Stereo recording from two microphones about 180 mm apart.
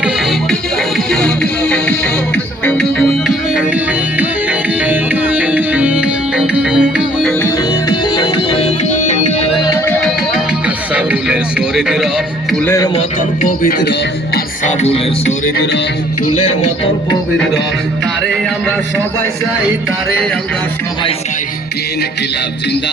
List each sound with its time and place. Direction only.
0.9 s music: 5° left (ahead or behind)
7.4 s music: 25° left (ahead or behind); by 9.3 s 40° left (ahead or behind)
9.8 s music: 10° left (ahead or behind)
10.9 s music: 5° right (ahead or behind)
12.6 s speech: 15° left (ahead or behind)
13.0 s speech: 50° left (ahead or behind)
14.3 s music: 40° left (ahead or behind)
15.5 s music: 70° left (ahead or behind)
16.2 s music: 40° left (ahead or behind)